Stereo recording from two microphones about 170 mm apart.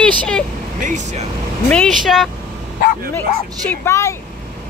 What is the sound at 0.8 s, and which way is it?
Speech, 45° right (ahead or behind).